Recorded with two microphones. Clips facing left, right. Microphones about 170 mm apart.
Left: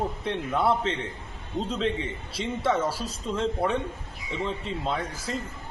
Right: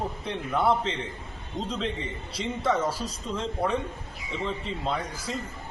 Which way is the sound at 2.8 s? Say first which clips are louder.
Even; 25° left (ahead or behind).